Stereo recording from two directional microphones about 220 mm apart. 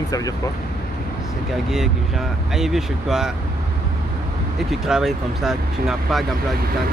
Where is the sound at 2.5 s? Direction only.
Centre (ahead or behind).